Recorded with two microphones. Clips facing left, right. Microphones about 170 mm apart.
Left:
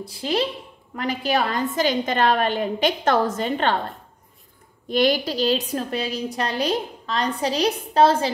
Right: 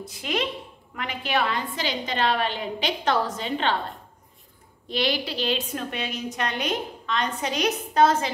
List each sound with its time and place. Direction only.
0.0 s a woman's voice: 30° left (ahead or behind); by 3.7 s 50° left (ahead or behind)
4.8 s a woman's voice: 45° left (ahead or behind); by 8.3 s 30° left (ahead or behind)